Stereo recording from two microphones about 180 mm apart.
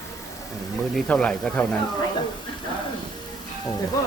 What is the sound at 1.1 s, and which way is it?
Speech, 5° left (ahead or behind).